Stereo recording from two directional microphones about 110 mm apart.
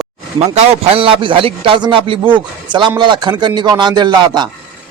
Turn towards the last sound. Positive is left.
turn(degrees=-40)  # may be behind; listen again after turning